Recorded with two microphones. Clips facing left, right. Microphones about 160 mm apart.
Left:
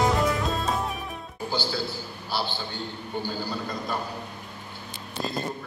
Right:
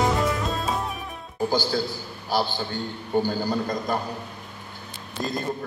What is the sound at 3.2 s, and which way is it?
Speech, 45° right (ahead or behind).